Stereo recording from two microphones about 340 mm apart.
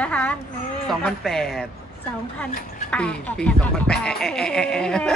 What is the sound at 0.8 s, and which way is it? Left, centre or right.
Speech, centre.